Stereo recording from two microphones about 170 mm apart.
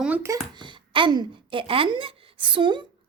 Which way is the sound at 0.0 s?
10° right (ahead or behind).